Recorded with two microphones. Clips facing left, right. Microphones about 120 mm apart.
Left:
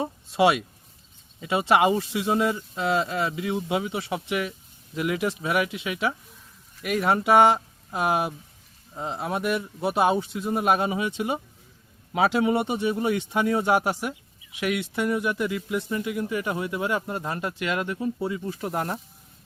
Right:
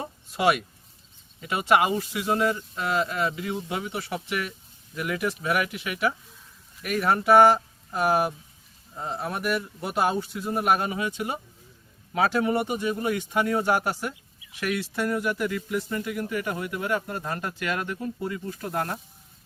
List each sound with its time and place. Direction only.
0.3 s speech: 25° left (ahead or behind)